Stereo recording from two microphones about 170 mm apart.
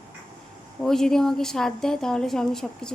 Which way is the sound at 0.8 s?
5° left (ahead or behind).